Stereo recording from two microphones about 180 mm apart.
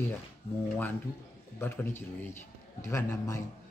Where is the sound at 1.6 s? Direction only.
15° left (ahead or behind).